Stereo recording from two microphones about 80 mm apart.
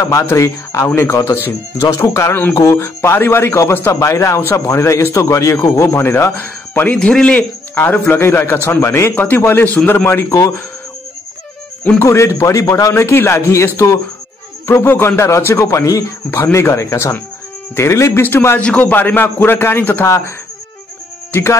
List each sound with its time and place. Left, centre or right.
0.0 s a man's voice: left
1.8 s a man's voice: left
7.0 s a man's voice: centre
12.0 s a man's voice: left
14.7 s a man's voice: left
16.3 s a man's voice: left
18.6 s a man's voice: centre
21.3 s speech: left